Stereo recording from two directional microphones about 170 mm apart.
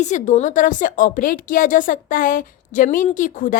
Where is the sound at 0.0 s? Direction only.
45° left (ahead or behind).